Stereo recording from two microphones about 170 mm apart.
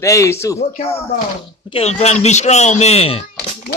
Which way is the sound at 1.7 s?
35° left (ahead or behind).